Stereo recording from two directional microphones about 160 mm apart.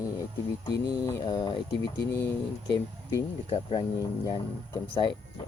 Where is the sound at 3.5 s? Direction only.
35° left (ahead or behind).